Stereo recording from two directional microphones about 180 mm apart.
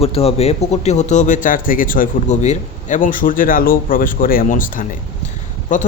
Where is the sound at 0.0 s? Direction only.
35° left (ahead or behind).